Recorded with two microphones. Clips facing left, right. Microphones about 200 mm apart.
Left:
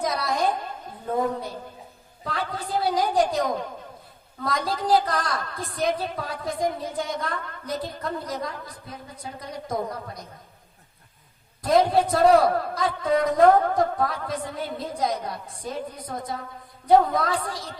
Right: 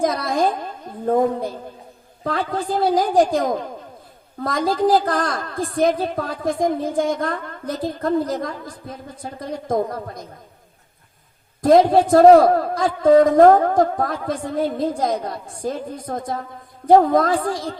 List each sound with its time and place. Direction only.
0.0 s a sound: 50° right (ahead or behind)
1.0 s a woman's voice: 50° right (ahead or behind)
11.6 s a woman's voice: 50° right (ahead or behind)